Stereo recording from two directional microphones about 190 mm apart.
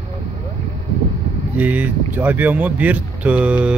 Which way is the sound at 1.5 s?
10° right (ahead or behind).